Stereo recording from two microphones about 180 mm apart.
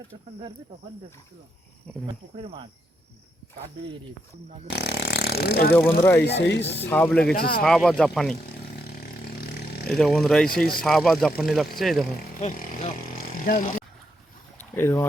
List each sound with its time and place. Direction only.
1.9 s speech: 5° left (ahead or behind)
2.3 s speech: 30° right (ahead or behind)
4.7 s speech: 65° left (ahead or behind)
5.7 s speech: 10° left (ahead or behind)
6.2 s speech: 75° left (ahead or behind)
6.9 s speech: 5° left (ahead or behind)
7.3 s speech: 55° left (ahead or behind)
7.6 s speech: centre (ahead or behind)
9.8 s speech: centre (ahead or behind)
12.4 s speech: 40° left (ahead or behind)
14.6 s boat: 15° left (ahead or behind)